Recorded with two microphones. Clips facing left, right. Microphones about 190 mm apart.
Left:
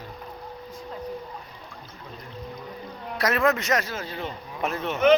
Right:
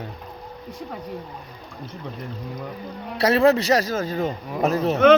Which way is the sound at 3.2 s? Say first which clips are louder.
Right 6 dB; 30° right (ahead or behind).